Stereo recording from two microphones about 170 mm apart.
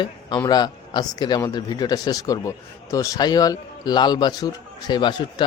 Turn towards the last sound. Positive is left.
turn(degrees=25)  # may be behind; listen again after turning